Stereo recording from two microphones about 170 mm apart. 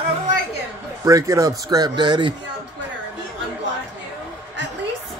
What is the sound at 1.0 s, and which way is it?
Speech, 20° right (ahead or behind).